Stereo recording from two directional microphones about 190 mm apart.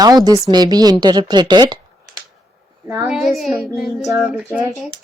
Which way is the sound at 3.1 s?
Centre (ahead or behind).